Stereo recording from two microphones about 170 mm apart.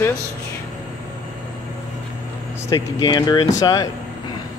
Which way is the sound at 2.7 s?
20° left (ahead or behind).